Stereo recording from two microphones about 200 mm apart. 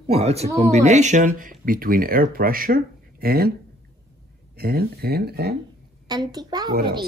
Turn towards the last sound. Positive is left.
turn(degrees=-20)  # may be behind; listen again after turning